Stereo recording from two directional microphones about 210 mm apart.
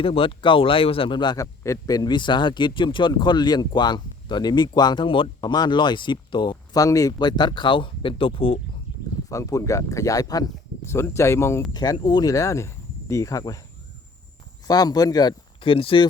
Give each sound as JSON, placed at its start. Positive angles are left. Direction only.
{"t": 0.0, "sound": "a man's voice", "side_deg": 25}
{"t": 14.7, "sound": "a man's voice", "side_deg": 20}